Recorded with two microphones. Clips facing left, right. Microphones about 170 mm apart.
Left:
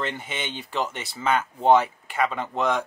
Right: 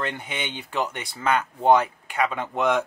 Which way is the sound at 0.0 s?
Centre (ahead or behind).